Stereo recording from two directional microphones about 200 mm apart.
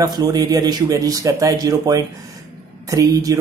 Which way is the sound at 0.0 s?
20° right (ahead or behind).